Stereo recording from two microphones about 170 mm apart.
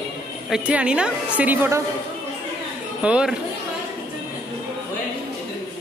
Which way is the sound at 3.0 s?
5° right (ahead or behind).